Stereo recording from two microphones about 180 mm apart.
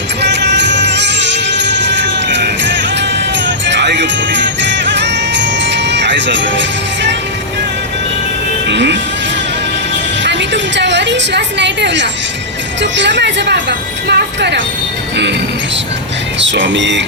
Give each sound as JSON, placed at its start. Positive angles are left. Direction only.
{"t": 0.2, "sound": "music", "side_deg": -75}
{"t": 8.6, "sound": "speech", "side_deg": -80}
{"t": 10.2, "sound": "a sound", "side_deg": -80}
{"t": 12.8, "sound": "a woman's voice", "side_deg": -80}
{"t": 16.4, "sound": "speech", "side_deg": -90}